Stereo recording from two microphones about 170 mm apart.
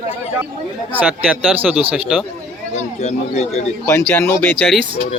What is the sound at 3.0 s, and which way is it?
Speech, 40° left (ahead or behind).